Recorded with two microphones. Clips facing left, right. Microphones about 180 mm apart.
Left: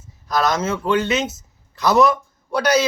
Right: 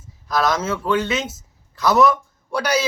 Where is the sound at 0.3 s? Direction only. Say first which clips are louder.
Even; 5° right (ahead or behind).